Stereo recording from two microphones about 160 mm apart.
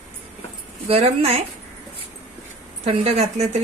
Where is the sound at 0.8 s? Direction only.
35° right (ahead or behind).